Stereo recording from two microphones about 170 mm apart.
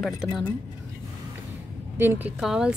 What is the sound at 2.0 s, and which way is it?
Speech, 10° right (ahead or behind).